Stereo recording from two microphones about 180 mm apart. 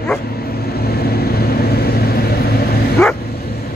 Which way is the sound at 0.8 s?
60° left (ahead or behind).